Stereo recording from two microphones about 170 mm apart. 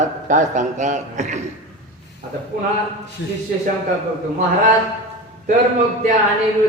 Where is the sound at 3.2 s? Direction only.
85° left.